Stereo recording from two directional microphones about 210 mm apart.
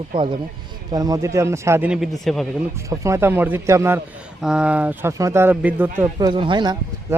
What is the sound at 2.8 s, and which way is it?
Speech, 15° right (ahead or behind).